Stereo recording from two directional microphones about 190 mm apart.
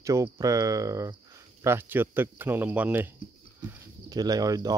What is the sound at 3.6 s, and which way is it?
Speech, 20° right (ahead or behind).